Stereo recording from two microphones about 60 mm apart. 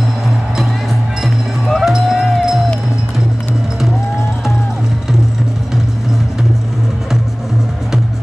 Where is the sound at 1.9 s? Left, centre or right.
Centre.